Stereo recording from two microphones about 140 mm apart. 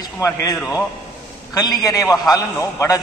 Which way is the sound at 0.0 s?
25° left (ahead or behind).